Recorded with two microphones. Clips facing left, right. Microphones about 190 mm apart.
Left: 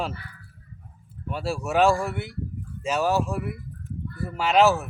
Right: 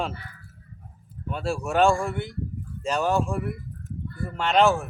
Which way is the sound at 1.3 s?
Centre (ahead or behind).